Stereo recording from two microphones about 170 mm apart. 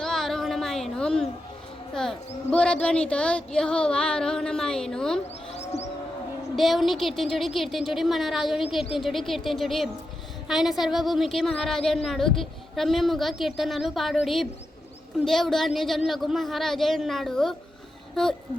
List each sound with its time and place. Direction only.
0.0 s a sound: centre (ahead or behind)
1.9 s speech: 5° left (ahead or behind)
5.5 s bird: 40° left (ahead or behind)
6.6 s speech: centre (ahead or behind)